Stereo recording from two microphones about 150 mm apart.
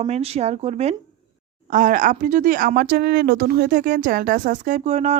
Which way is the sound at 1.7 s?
60° right (ahead or behind).